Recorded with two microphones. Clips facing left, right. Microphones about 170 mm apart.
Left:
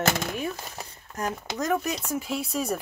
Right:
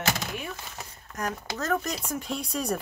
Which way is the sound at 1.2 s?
25° left (ahead or behind).